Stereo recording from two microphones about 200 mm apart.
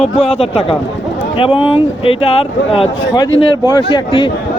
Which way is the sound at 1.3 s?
25° left (ahead or behind).